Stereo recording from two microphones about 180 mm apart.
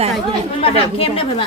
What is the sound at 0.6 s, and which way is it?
Speech, 30° left (ahead or behind).